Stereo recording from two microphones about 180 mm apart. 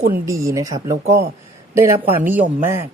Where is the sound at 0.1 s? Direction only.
20° right (ahead or behind).